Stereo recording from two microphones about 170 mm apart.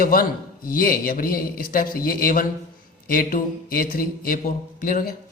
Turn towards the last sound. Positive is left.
turn(degrees=55)  # may be behind; listen again after turning